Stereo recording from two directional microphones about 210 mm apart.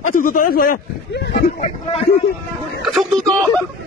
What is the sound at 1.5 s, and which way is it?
Speech, 30° left (ahead or behind).